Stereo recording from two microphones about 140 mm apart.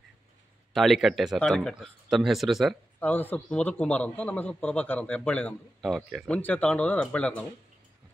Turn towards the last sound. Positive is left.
turn(degrees=10)  # may be behind; listen again after turning